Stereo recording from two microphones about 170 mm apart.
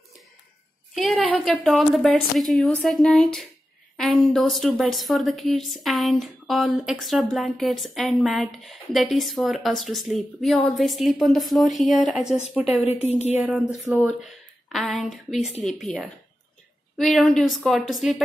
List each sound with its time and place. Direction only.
0.9 s a woman's voice: centre (ahead or behind)
12.8 s a woman's voice: 40° left (ahead or behind)
13.4 s a woman's voice: centre (ahead or behind)